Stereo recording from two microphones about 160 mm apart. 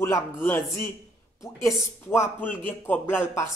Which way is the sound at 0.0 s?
15° left (ahead or behind).